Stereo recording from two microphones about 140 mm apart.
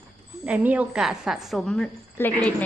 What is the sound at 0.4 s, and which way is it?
A woman's voice, 10° right (ahead or behind).